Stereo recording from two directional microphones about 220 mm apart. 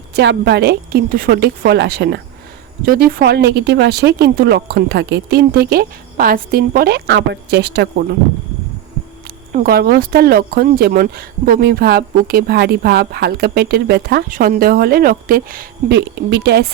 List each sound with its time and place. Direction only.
0.1 s speech: 50° right (ahead or behind)
9.5 s speech: 40° right (ahead or behind)